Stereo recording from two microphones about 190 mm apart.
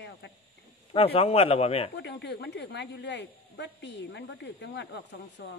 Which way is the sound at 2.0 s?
65° left (ahead or behind).